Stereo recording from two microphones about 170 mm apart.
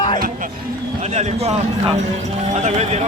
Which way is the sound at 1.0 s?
40° right (ahead or behind).